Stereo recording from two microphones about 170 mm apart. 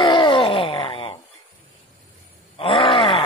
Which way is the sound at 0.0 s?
30° left (ahead or behind).